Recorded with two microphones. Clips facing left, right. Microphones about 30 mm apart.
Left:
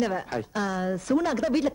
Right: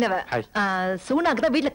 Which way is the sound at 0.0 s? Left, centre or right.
Right.